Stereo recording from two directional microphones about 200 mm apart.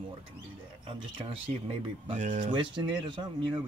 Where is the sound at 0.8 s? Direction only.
25° right (ahead or behind).